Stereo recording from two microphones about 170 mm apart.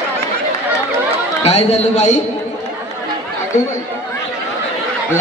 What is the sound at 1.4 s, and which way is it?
Speech, 40° left (ahead or behind).